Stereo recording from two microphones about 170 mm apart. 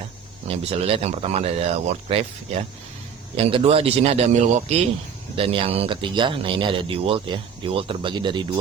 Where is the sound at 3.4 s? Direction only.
35° right (ahead or behind).